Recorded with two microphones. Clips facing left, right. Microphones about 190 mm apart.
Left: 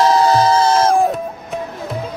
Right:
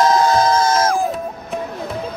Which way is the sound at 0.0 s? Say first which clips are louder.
Left 2 dB; 35° left (ahead or behind).